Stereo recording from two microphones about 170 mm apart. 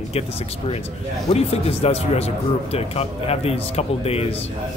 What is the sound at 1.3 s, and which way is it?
Speech, 35° left (ahead or behind).